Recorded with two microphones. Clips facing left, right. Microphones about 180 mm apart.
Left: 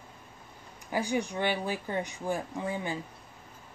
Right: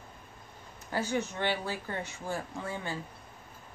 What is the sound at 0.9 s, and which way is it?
Speech, 15° left (ahead or behind).